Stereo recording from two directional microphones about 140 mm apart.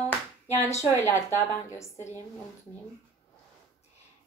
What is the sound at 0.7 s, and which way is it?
A woman's voice, 20° left (ahead or behind).